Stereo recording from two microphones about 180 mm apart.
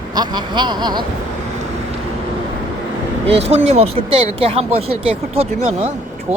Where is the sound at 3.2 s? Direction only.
35° right (ahead or behind).